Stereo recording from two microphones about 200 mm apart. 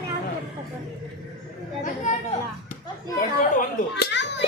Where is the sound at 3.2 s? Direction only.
40° left (ahead or behind).